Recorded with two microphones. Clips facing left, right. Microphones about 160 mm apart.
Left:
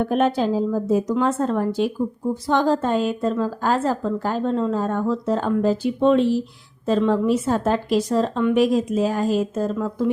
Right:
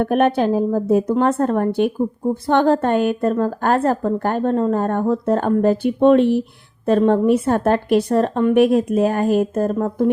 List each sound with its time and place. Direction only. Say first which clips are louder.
0.0 s a woman's voice: right 3 dB; 60° right (ahead or behind)